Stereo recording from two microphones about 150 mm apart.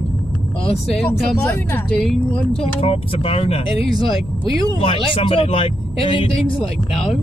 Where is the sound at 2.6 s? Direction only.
40° left (ahead or behind).